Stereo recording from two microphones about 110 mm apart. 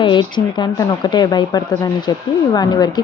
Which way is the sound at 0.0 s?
45° left (ahead or behind).